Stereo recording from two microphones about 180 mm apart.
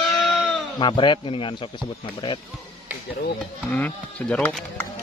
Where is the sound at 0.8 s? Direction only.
25° left (ahead or behind).